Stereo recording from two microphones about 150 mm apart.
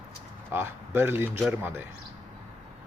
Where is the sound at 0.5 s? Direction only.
15° right (ahead or behind).